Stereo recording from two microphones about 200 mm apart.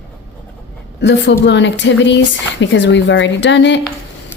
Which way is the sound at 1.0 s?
60° left (ahead or behind).